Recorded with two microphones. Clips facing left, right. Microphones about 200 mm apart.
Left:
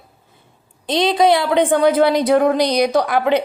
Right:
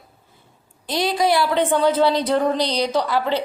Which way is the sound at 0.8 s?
20° left (ahead or behind).